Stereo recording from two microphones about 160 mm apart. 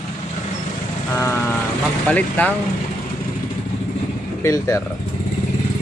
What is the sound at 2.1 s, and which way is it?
Speech, 10° left (ahead or behind).